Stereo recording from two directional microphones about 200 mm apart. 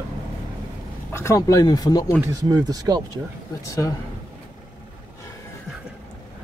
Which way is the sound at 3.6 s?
15° left (ahead or behind).